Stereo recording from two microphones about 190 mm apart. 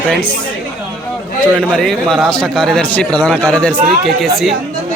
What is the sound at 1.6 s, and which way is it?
A man's voice, 5° left (ahead or behind).